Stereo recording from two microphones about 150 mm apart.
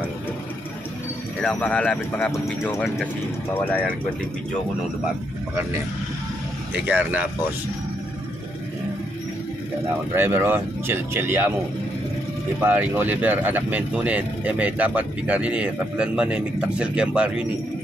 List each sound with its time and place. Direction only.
1.4 s speech: 10° left (ahead or behind)
2.3 s speech: 20° left (ahead or behind)
6.7 s speech: 10° right (ahead or behind)
10.1 s speech: 15° right (ahead or behind)
12.5 s speech: 10° right (ahead or behind)